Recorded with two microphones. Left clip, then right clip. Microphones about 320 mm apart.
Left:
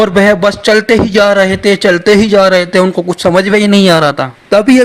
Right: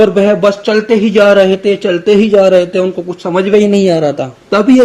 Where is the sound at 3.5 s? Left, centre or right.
Left.